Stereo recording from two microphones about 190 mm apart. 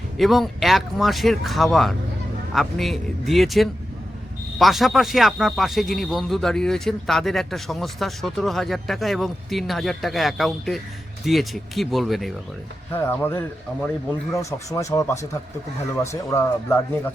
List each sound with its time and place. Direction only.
0.2 s speech: centre (ahead or behind)
12.9 s speech: 10° left (ahead or behind)